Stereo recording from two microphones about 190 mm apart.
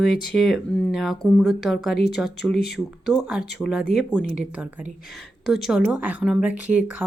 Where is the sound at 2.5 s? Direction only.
55° left (ahead or behind).